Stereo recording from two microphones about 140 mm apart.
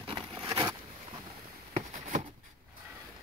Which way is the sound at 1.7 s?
60° right (ahead or behind).